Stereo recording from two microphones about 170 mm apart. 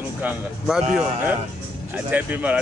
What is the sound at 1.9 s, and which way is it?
Mantra, 10° right (ahead or behind).